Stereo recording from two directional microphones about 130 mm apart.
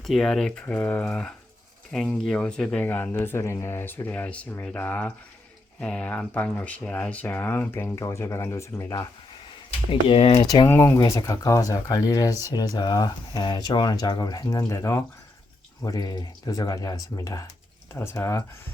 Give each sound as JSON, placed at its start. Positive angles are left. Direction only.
{"t": 0.0, "sound": "speech", "side_deg": 0}
{"t": 9.9, "sound": "speech", "side_deg": 45}
{"t": 10.7, "sound": "speech", "side_deg": 20}